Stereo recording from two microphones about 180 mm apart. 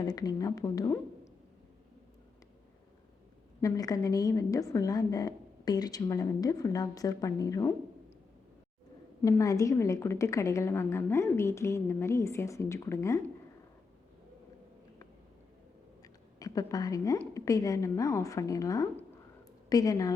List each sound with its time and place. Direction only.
0.0 s a woman's voice: 20° left (ahead or behind)
3.6 s a woman's voice: 20° left (ahead or behind)
9.2 s a woman's voice: 20° left (ahead or behind)
16.4 s a woman's voice: 20° left (ahead or behind)